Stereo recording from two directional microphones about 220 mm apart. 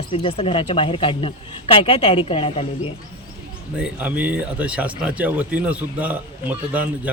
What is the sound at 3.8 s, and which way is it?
A man's voice, 5° right (ahead or behind).